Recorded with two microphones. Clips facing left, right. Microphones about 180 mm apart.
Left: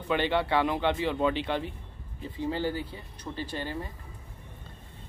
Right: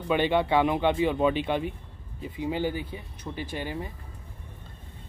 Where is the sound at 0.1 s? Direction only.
15° right (ahead or behind).